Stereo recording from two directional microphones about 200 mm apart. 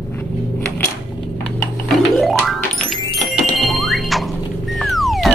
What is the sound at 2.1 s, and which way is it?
Music, centre (ahead or behind).